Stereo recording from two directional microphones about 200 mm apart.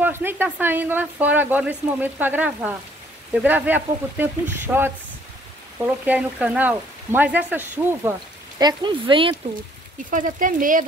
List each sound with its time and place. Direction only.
0.0 s speech: 10° right (ahead or behind)
8.5 s speech: 20° right (ahead or behind)
10.1 s speech: 40° right (ahead or behind)